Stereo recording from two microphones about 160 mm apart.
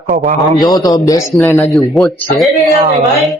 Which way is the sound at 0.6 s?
25° left (ahead or behind).